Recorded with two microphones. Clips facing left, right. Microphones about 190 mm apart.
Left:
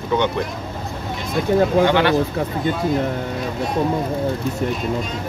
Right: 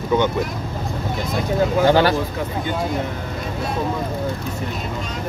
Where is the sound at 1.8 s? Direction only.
35° right (ahead or behind).